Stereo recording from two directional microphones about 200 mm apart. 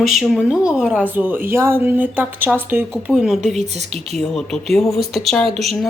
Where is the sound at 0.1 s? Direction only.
5° right (ahead or behind).